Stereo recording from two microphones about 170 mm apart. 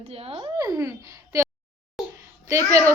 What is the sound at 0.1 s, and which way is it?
Speech, 35° right (ahead or behind).